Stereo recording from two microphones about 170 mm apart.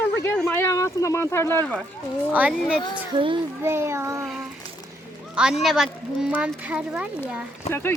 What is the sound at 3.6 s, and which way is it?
Speech, 15° right (ahead or behind).